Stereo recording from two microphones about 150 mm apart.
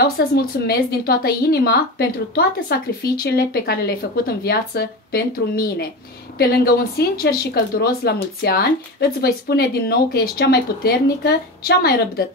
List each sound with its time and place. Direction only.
0.0 s a woman's voice: 80° left